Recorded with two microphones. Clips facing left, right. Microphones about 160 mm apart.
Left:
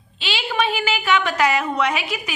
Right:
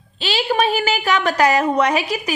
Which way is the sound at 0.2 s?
40° right (ahead or behind).